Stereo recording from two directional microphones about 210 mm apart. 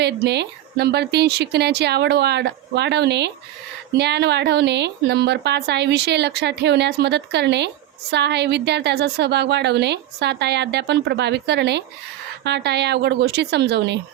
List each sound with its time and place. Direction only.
0.0 s a woman's voice: 50° right (ahead or behind)